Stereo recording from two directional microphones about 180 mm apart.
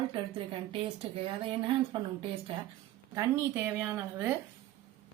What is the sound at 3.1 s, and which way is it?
A woman's voice, 10° right (ahead or behind).